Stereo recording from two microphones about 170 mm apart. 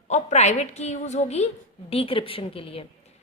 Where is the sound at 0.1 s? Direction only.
40° left (ahead or behind).